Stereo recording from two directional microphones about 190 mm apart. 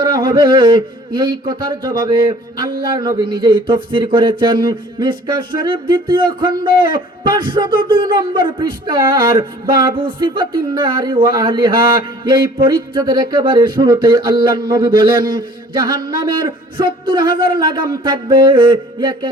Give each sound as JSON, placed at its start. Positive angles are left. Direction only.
{"t": 0.0, "sound": "speech", "side_deg": -25}
{"t": 10.3, "sound": "speech", "side_deg": -25}